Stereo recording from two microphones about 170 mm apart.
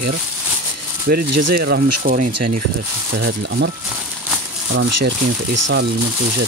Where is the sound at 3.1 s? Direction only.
75° right (ahead or behind).